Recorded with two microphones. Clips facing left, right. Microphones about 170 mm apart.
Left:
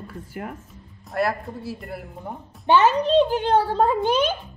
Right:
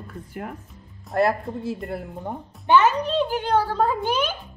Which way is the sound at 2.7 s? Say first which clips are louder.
Left 2 dB; 30° left (ahead or behind).